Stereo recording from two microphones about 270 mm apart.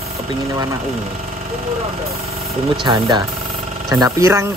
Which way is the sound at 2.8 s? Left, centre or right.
Centre.